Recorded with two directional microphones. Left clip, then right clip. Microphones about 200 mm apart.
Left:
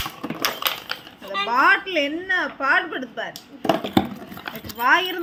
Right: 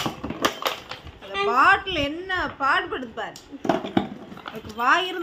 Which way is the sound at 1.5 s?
Centre (ahead or behind).